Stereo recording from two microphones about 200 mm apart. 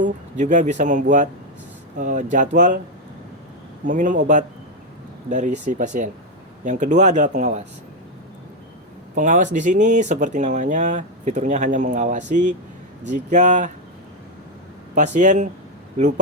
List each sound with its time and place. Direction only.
0.0 s speech: 40° right (ahead or behind)
3.8 s speech: 40° right (ahead or behind)
9.1 s speech: 40° right (ahead or behind)
14.9 s speech: 40° right (ahead or behind)